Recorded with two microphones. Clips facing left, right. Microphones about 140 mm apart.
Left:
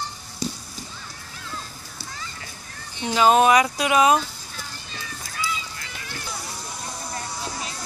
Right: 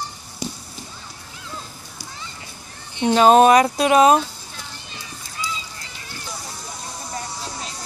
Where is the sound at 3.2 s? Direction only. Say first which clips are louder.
Right 4 dB; 35° right (ahead or behind).